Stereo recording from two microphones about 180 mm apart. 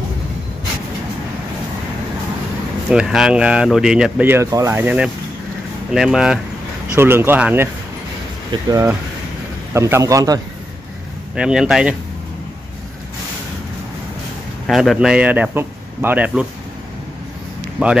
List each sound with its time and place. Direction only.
2.9 s a man's voice: 5° right (ahead or behind); by 10.4 s 20° right (ahead or behind)
11.3 s speech: 5° right (ahead or behind)
14.7 s a man's voice: centre (ahead or behind)
17.8 s a man's voice: 5° right (ahead or behind)